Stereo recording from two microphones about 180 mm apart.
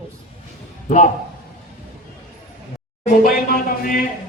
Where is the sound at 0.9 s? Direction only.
45° left (ahead or behind).